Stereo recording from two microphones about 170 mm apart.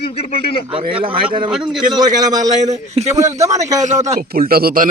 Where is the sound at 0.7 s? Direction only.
35° right (ahead or behind).